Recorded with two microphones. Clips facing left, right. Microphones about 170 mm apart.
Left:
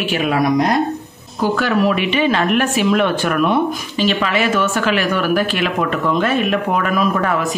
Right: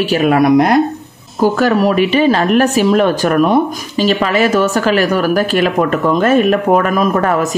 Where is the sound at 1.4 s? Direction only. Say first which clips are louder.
Right 4 dB; 40° right (ahead or behind).